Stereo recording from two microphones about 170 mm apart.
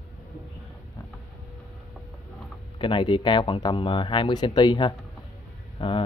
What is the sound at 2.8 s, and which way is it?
Speech, 30° left (ahead or behind).